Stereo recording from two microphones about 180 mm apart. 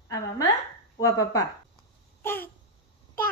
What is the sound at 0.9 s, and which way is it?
Speech, 15° left (ahead or behind).